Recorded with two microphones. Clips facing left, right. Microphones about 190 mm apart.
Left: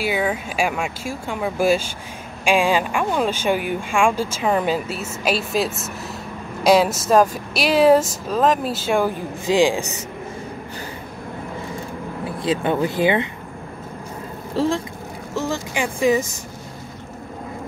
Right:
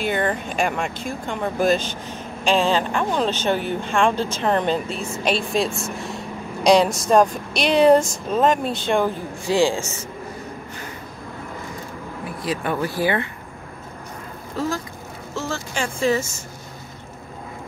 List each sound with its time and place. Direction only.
0.0 s speech: 5° left (ahead or behind)
12.3 s speech: 25° left (ahead or behind)
14.5 s speech: 30° left (ahead or behind)
15.3 s speech: 15° left (ahead or behind)